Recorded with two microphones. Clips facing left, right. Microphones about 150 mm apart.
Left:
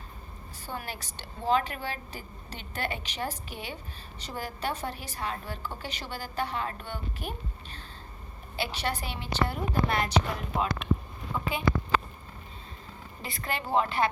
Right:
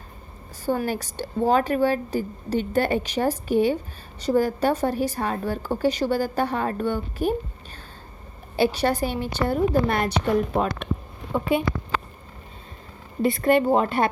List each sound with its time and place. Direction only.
0.6 s a woman's voice: 40° right (ahead or behind)
8.5 s a woman's voice: 40° right (ahead or behind)
13.2 s a woman's voice: 50° right (ahead or behind)